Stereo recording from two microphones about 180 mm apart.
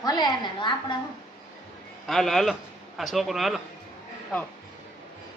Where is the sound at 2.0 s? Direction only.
Centre (ahead or behind).